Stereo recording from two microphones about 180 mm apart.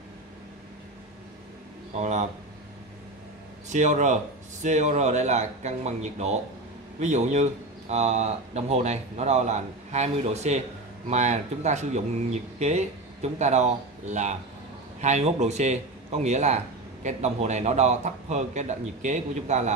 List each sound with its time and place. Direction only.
2.0 s a man's voice: 40° right (ahead or behind)
3.6 s a man's voice: 40° right (ahead or behind)